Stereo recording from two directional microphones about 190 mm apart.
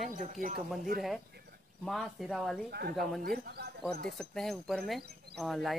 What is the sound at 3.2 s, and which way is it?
Speech, 55° right (ahead or behind).